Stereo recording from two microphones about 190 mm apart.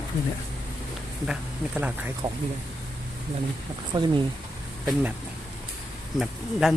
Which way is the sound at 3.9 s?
25° right (ahead or behind).